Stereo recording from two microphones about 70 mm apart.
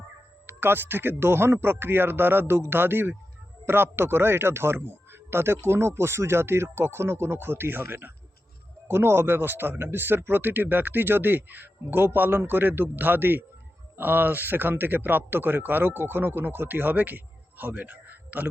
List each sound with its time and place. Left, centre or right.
0.4 s speech: right